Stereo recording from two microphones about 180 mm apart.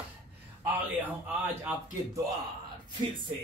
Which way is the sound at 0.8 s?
10° right (ahead or behind).